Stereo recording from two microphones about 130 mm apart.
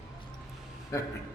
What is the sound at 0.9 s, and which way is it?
Speech, 25° left (ahead or behind).